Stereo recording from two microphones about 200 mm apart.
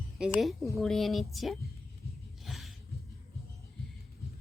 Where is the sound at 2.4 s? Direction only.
Centre (ahead or behind).